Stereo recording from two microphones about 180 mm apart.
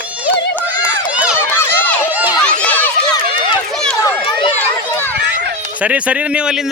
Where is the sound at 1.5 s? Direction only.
10° left (ahead or behind).